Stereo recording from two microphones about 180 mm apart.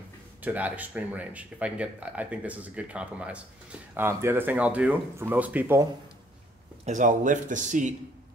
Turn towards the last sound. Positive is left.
turn(degrees=-45)  # may be behind; listen again after turning